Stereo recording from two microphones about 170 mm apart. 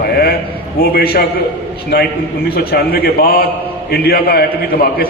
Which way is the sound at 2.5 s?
65° left (ahead or behind).